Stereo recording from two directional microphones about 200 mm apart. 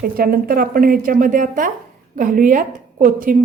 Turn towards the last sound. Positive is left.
turn(degrees=-45)  # may be behind; listen again after turning